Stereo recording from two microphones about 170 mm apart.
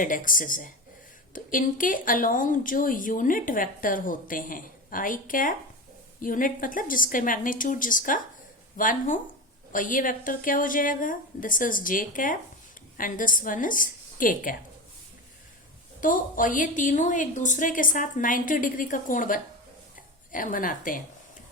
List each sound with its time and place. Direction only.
0.0 s a woman's voice: 50° left (ahead or behind)
16.0 s a woman's voice: 50° left (ahead or behind)